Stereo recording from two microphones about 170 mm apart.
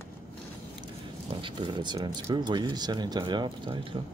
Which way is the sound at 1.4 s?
30° right (ahead or behind).